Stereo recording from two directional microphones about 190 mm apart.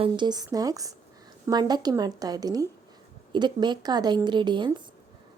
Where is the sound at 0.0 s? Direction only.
25° right (ahead or behind).